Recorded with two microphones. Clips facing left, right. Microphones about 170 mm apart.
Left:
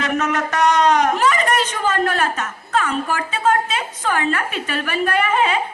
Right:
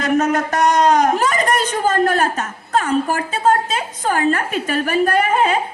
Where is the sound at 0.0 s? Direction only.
40° right (ahead or behind).